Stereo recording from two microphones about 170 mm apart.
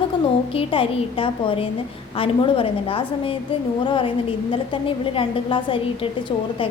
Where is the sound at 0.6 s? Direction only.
35° left (ahead or behind).